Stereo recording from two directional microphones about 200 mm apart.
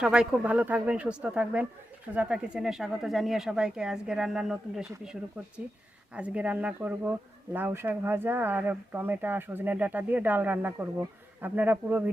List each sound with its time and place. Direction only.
0.0 s speech: 5° right (ahead or behind)
6.1 s speech: 5° right (ahead or behind)